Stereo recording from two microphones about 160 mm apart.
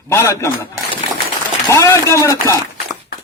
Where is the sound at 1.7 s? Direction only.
20° left (ahead or behind).